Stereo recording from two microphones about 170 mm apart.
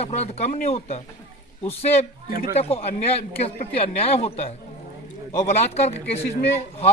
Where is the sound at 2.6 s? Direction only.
35° left (ahead or behind).